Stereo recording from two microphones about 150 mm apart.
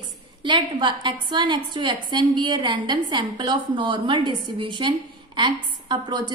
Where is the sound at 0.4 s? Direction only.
30° right (ahead or behind).